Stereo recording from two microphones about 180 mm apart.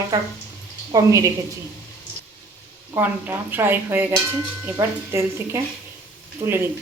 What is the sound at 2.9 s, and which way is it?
Speech, 10° right (ahead or behind).